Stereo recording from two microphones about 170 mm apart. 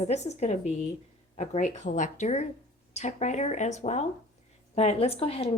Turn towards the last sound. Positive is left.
turn(degrees=35)  # may be behind; listen again after turning